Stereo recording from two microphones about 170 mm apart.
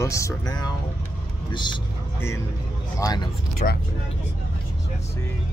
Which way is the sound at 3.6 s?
50° left (ahead or behind).